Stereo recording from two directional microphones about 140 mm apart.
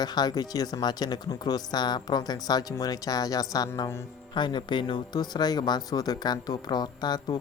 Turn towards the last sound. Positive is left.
turn(degrees=30)  # may be behind; listen again after turning